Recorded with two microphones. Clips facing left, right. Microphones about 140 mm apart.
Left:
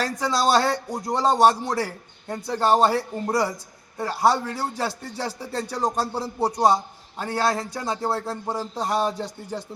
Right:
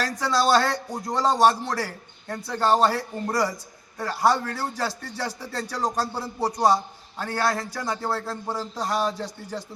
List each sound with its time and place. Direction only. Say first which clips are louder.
0.0 s a man's voice: left 1 dB; 15° left (ahead or behind)
6.2 s a man's voice: left 2 dB; 25° left (ahead or behind)